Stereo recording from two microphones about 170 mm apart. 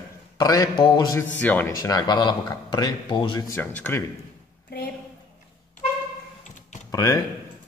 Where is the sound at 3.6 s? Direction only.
15° left (ahead or behind).